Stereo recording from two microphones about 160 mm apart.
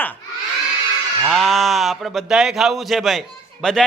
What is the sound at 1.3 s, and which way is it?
Speech, centre (ahead or behind).